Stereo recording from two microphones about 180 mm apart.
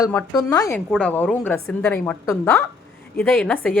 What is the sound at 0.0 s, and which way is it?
Speech, 15° left (ahead or behind).